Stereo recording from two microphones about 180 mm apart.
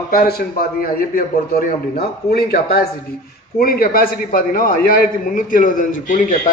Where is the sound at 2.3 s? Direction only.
60° left (ahead or behind).